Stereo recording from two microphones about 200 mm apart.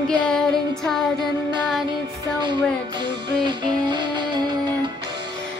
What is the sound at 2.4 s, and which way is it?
Music, 20° right (ahead or behind).